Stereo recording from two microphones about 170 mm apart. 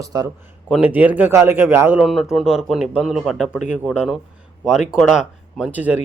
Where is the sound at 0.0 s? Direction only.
20° right (ahead or behind).